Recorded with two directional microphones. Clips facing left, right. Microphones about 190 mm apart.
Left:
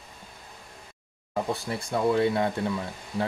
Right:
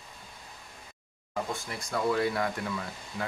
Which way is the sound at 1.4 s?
30° left (ahead or behind).